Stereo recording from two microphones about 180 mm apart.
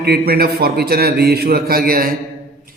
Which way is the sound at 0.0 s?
60° right (ahead or behind).